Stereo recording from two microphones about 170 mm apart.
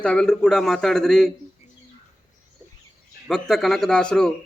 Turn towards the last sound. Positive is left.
turn(degrees=5)  # may be behind; listen again after turning